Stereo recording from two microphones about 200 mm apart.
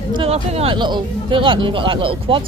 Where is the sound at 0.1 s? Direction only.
30° right (ahead or behind).